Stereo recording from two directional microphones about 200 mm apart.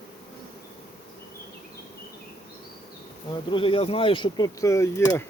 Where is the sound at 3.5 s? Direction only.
25° left (ahead or behind).